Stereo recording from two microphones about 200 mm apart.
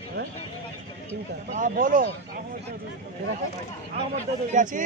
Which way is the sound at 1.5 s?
40° right (ahead or behind).